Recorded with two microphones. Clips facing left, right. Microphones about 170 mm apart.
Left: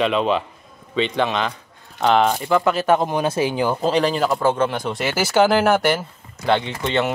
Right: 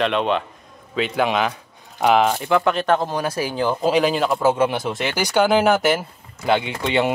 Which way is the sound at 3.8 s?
5° right (ahead or behind).